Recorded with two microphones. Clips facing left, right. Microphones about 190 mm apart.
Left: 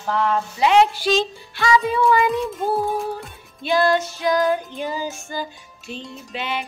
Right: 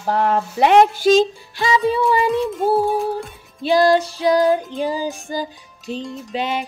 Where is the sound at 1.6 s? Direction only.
30° right (ahead or behind).